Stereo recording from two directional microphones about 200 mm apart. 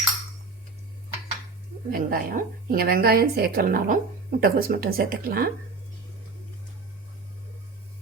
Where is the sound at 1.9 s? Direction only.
45° right (ahead or behind).